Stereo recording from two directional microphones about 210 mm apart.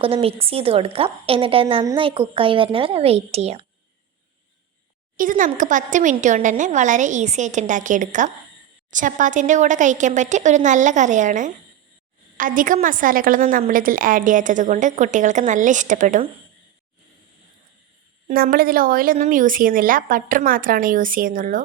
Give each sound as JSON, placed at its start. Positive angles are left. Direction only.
{"t": 0.0, "sound": "a woman's voice", "side_deg": -25}
{"t": 5.1, "sound": "a woman's voice", "side_deg": -40}
{"t": 18.3, "sound": "a woman's voice", "side_deg": -40}